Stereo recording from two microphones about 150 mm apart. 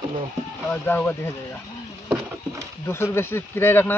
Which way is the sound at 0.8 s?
15° left (ahead or behind).